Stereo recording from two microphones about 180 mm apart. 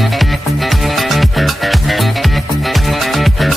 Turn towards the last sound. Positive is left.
turn(degrees=0)  # may be behind; listen again after turning